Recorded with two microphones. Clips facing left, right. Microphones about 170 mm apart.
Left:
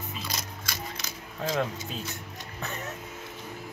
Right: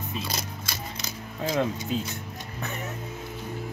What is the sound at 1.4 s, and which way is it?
Speech, 15° right (ahead or behind).